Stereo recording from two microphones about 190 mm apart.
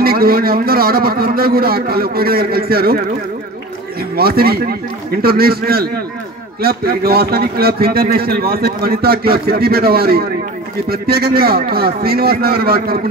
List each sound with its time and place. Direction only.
0.0 s a man's voice: 50° right (ahead or behind)
4.2 s a man's voice: 55° right (ahead or behind)